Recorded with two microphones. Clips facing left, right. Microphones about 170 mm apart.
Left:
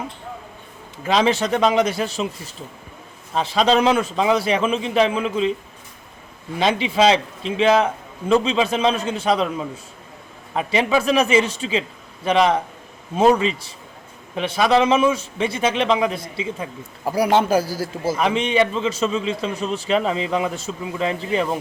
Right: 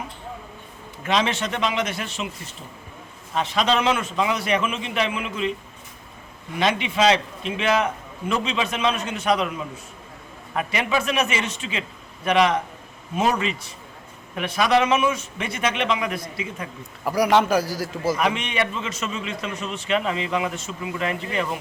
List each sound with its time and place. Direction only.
1.0 s a man's voice: 35° left (ahead or behind)
3.3 s a man's voice: 30° left (ahead or behind)
6.6 s a man's voice: 30° left (ahead or behind)